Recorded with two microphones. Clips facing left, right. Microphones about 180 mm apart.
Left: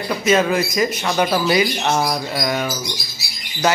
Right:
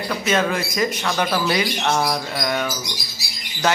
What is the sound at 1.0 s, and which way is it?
Speech, 20° left (ahead or behind).